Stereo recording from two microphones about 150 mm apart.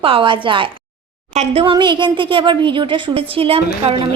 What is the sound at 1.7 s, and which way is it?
A woman's voice, 30° right (ahead or behind).